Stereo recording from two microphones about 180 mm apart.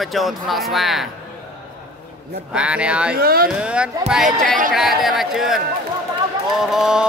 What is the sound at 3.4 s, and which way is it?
Speech, 5° right (ahead or behind).